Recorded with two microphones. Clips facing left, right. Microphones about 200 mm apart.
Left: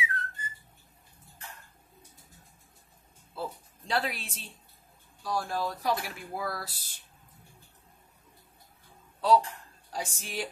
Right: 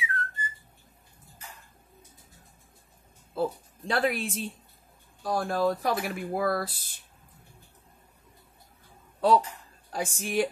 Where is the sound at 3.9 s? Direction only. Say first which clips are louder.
Right 5 dB; 50° right (ahead or behind).